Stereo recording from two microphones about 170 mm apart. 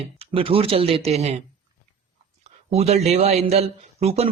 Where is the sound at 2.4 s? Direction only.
40° right (ahead or behind).